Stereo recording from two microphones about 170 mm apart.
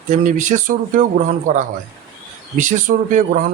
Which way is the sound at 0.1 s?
45° right (ahead or behind).